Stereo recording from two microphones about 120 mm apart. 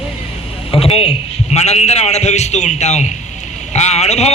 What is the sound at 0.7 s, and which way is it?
A man's voice, 55° left (ahead or behind).